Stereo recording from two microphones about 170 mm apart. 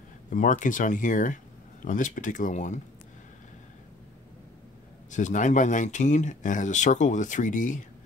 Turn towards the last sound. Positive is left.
turn(degrees=50)  # may be behind; listen again after turning